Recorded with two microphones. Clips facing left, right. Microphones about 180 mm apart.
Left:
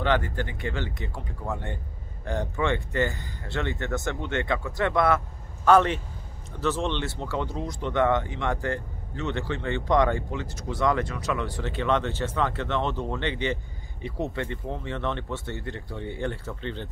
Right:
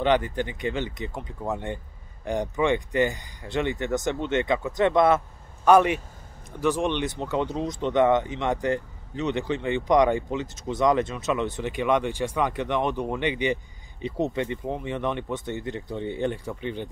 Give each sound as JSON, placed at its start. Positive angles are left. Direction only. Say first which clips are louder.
{"t": 0.0, "sound": "speech", "louder": "right 3 dB", "side_deg": -20}